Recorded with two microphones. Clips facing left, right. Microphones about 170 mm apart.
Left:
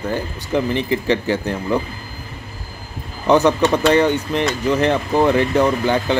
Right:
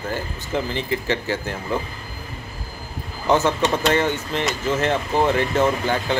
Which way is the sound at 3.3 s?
15° left (ahead or behind).